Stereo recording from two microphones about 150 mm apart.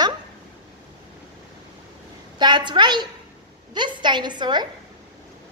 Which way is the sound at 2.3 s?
30° right (ahead or behind).